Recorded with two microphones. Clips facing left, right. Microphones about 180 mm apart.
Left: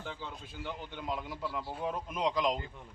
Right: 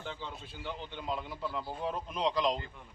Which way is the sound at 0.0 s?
5° left (ahead or behind).